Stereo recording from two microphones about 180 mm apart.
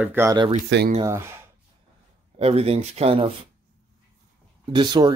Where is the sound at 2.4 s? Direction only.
35° right (ahead or behind).